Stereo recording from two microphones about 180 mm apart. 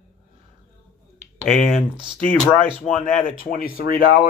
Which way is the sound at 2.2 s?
10° left (ahead or behind).